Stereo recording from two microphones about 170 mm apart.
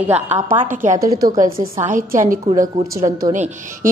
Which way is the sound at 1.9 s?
50° right (ahead or behind).